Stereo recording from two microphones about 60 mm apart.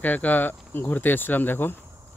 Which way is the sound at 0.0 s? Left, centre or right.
Left.